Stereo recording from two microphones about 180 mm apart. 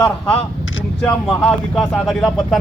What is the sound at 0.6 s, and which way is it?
Vehicle, 90° left.